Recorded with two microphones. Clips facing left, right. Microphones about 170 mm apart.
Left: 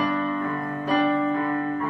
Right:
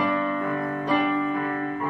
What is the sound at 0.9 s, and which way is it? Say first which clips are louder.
Music: left 2 dB; 40° left (ahead or behind).